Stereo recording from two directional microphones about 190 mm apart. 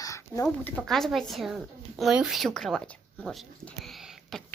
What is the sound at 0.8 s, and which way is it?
A woman's voice, centre (ahead or behind).